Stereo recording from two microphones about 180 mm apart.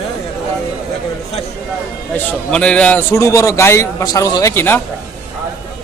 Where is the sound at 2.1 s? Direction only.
5° left (ahead or behind).